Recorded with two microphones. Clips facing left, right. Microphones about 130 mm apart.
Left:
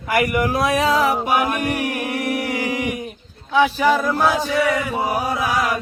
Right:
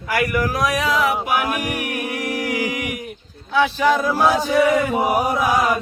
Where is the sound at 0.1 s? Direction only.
25° left (ahead or behind).